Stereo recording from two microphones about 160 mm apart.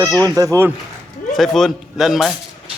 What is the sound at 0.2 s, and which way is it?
Speech, 20° right (ahead or behind).